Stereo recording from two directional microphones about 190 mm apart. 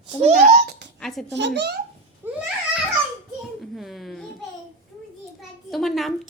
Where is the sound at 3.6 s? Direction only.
Centre (ahead or behind).